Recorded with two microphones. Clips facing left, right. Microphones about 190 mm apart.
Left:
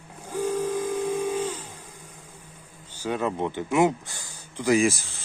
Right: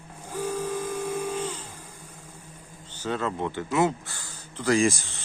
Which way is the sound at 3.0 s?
15° left (ahead or behind).